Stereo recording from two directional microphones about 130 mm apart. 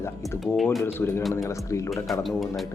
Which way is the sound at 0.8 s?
20° left (ahead or behind).